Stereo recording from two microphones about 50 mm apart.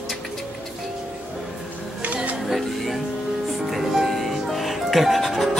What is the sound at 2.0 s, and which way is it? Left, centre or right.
Music, right.